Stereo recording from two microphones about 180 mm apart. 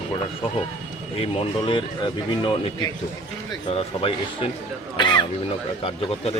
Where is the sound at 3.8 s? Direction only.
30° left (ahead or behind).